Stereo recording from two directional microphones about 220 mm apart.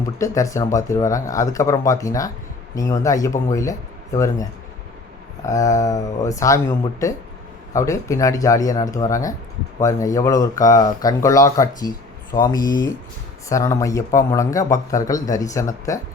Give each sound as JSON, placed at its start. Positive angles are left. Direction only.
{"t": 0.0, "sound": "speech", "side_deg": 15}